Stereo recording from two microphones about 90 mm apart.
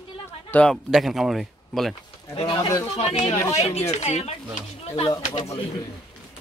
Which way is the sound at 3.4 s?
30° left (ahead or behind).